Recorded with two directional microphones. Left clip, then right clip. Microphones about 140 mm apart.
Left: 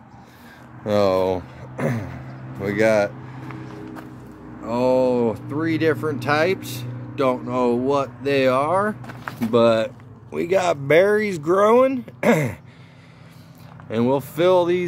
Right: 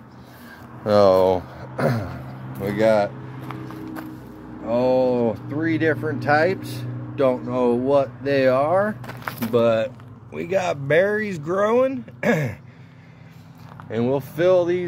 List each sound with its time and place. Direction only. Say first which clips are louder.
0.8 s speech: right 4 dB; 15° left (ahead or behind)
2.6 s speech: even; 45° left (ahead or behind)
4.6 s speech: even; 25° left (ahead or behind)
9.5 s speech: left 2 dB; 40° left (ahead or behind)
13.8 s speech: left 2 dB; 40° left (ahead or behind)